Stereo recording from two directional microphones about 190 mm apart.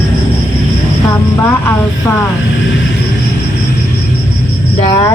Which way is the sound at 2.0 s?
15° left (ahead or behind).